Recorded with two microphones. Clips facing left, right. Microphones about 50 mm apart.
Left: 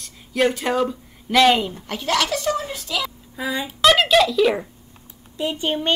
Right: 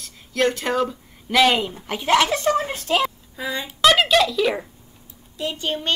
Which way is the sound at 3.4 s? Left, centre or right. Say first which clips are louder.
Even; centre.